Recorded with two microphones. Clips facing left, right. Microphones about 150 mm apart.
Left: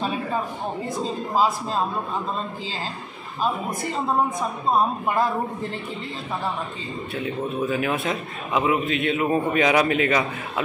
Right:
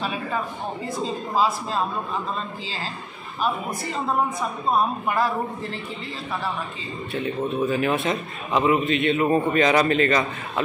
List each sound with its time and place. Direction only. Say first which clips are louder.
7.2 s a man's voice: right 2 dB; centre (ahead or behind)